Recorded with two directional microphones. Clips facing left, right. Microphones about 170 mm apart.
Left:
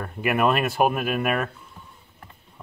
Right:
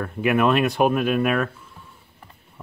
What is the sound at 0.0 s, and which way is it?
Speech, centre (ahead or behind).